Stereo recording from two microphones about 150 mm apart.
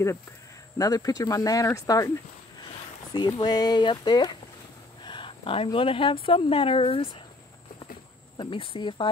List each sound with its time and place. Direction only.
0.7 s speech: 25° left (ahead or behind)
3.1 s speech: 25° left (ahead or behind)
8.4 s speech: 35° left (ahead or behind)